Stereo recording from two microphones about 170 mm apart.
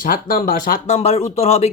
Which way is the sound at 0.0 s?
60° left (ahead or behind).